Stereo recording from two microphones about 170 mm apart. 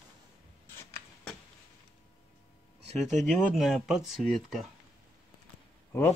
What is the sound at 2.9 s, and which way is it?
Speech, 40° right (ahead or behind).